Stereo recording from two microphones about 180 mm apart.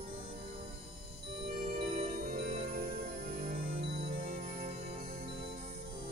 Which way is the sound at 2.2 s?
50° right (ahead or behind).